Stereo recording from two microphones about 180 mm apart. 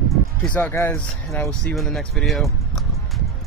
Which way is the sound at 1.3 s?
Centre (ahead or behind).